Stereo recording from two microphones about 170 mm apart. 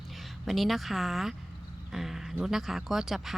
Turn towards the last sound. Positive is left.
turn(degrees=0)  # may be behind; listen again after turning